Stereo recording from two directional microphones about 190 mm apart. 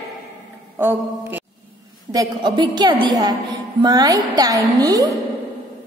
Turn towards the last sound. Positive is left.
turn(degrees=-20)  # may be behind; listen again after turning